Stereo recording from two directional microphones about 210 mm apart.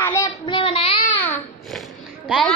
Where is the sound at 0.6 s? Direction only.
25° left (ahead or behind).